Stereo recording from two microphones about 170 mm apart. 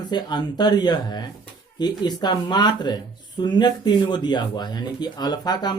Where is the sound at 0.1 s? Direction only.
25° left (ahead or behind).